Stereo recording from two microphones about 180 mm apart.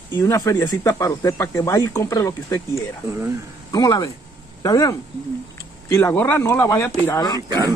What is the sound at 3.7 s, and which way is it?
Speech, 20° left (ahead or behind).